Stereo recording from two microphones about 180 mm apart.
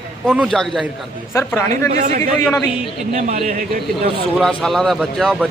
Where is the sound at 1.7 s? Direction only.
40° right (ahead or behind).